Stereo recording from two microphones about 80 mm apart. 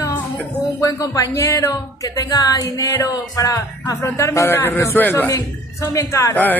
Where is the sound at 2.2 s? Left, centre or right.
Left.